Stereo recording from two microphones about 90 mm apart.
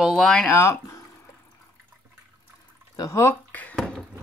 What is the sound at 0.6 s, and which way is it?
Speech, 35° left (ahead or behind).